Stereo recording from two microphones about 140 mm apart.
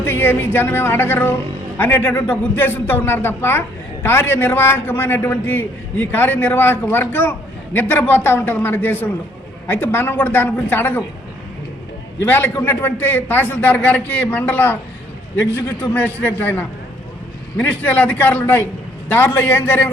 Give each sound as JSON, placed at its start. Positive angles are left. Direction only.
{"t": 0.0, "sound": "a man's voice", "side_deg": 15}
{"t": 12.2, "sound": "a man's voice", "side_deg": 15}